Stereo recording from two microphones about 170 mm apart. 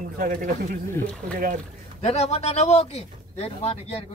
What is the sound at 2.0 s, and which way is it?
Speech, 40° left (ahead or behind).